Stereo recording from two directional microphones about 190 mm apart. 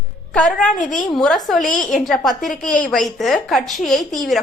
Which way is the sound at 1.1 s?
Centre (ahead or behind).